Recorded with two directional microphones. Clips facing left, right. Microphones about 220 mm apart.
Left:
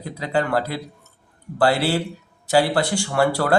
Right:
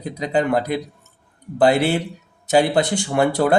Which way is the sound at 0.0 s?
20° right (ahead or behind).